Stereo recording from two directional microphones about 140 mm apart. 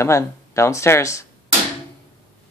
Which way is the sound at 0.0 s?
20° left (ahead or behind).